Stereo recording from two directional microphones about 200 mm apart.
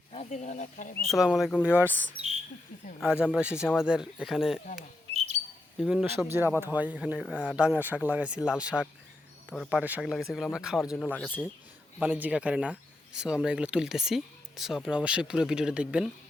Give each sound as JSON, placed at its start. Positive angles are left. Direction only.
{"t": 0.1, "sound": "speech", "side_deg": 35}
{"t": 1.0, "sound": "speech", "side_deg": 0}
{"t": 1.9, "sound": "speech", "side_deg": 10}
{"t": 3.3, "sound": "speech", "side_deg": -5}
{"t": 4.6, "sound": "speech", "side_deg": 45}
{"t": 5.8, "sound": "speech", "side_deg": -5}
{"t": 10.8, "sound": "speech", "side_deg": 10}
{"t": 11.9, "sound": "speech", "side_deg": -5}